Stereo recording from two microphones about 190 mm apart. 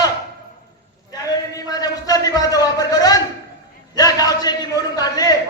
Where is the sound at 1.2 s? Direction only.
20° left (ahead or behind).